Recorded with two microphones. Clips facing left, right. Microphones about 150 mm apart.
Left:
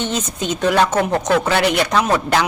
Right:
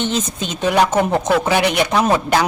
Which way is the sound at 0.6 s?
15° right (ahead or behind).